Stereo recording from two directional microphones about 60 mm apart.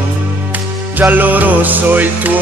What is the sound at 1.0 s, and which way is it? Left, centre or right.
Music, right.